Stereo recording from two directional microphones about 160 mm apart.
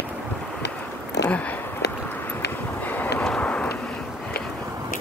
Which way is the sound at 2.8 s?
10° left (ahead or behind).